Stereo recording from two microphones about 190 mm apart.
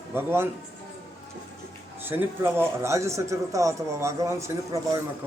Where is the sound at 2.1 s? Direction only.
10° right (ahead or behind).